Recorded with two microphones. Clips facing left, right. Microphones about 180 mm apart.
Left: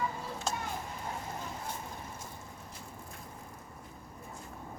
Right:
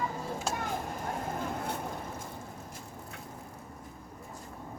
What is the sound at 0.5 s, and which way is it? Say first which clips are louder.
Children playing: right 1 dB; 5° right (ahead or behind).